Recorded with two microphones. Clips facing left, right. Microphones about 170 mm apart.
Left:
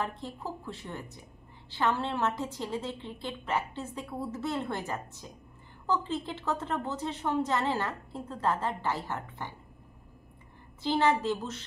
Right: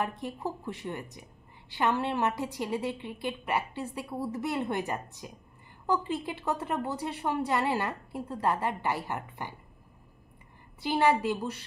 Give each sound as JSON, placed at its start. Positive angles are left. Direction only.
{"t": 0.0, "sound": "a woman's voice", "side_deg": -15}
{"t": 10.8, "sound": "a woman's voice", "side_deg": -10}